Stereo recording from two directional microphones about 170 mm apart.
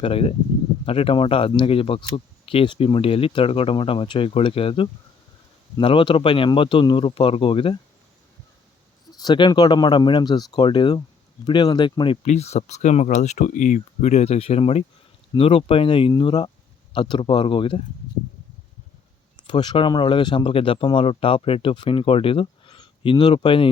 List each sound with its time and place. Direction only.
0.0 s speech: 35° left (ahead or behind)
9.1 s speech: 25° left (ahead or behind)
12.2 s speech: 40° left (ahead or behind)
19.4 s speech: 25° left (ahead or behind)